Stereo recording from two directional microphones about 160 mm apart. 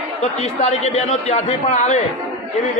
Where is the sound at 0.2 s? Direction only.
50° left (ahead or behind).